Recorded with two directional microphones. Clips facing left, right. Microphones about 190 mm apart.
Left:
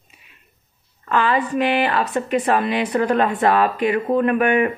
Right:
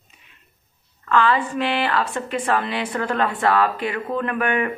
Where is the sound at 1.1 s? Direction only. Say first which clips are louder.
Even; 15° left (ahead or behind).